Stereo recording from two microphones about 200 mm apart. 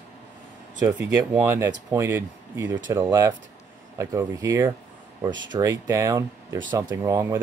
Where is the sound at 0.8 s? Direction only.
10° right (ahead or behind).